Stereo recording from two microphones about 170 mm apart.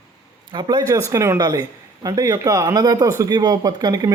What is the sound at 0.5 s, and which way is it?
Speech, 25° right (ahead or behind).